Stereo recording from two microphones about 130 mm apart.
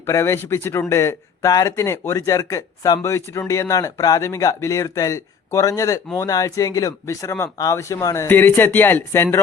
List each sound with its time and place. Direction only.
0.0 s speech: 20° left (ahead or behind)